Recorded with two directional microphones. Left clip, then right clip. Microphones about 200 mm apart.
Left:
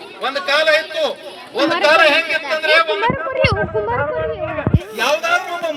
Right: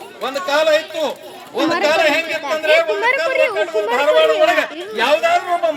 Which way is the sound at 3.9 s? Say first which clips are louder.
Right 7 dB; 15° right (ahead or behind).